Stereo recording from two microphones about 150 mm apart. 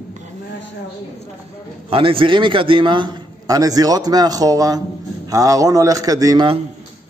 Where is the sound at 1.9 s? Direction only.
35° right (ahead or behind).